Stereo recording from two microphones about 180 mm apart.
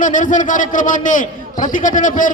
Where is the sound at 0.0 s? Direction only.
45° left (ahead or behind).